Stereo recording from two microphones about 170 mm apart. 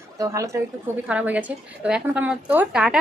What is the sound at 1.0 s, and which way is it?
A woman's voice, 10° right (ahead or behind).